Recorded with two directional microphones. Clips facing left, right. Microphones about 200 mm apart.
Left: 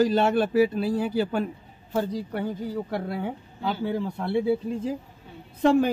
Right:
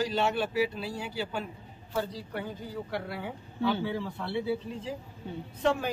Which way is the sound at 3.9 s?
45° left (ahead or behind).